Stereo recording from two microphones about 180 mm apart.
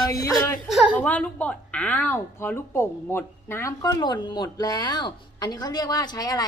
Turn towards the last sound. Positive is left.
turn(degrees=20)  # may be behind; listen again after turning